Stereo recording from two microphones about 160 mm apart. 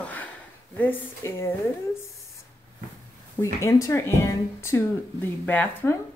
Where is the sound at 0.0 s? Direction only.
10° left (ahead or behind).